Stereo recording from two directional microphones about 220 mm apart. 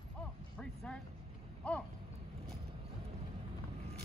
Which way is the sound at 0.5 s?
5° left (ahead or behind).